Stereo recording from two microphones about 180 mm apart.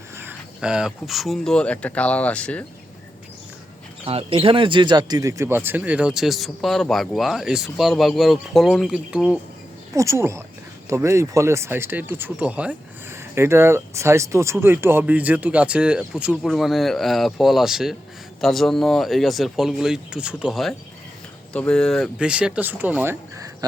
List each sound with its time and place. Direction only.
0.2 s speech: 10° right (ahead or behind)
4.0 s speech: 30° right (ahead or behind); by 9.4 s 5° right (ahead or behind)
9.9 s speech: 15° right (ahead or behind)